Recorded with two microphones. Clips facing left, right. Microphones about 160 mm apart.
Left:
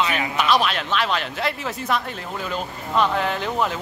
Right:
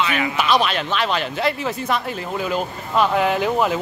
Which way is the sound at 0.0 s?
35° left (ahead or behind).